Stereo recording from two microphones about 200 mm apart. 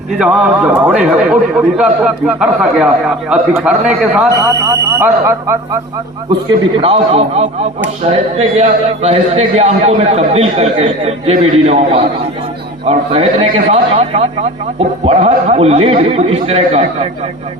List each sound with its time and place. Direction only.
0.2 s a man's voice: 5° right (ahead or behind)
6.5 s speech: 25° right (ahead or behind)